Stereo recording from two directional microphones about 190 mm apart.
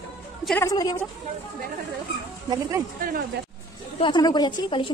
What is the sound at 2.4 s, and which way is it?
Speech, 20° right (ahead or behind).